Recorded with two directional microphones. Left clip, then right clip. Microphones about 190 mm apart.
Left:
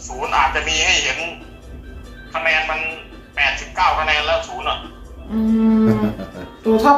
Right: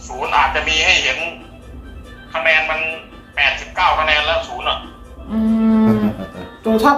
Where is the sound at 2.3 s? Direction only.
10° right (ahead or behind).